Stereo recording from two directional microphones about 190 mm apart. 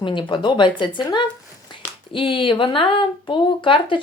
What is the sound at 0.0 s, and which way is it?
Speech, 25° left (ahead or behind).